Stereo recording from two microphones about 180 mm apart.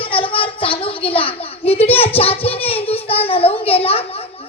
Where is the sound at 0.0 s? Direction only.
30° left (ahead or behind).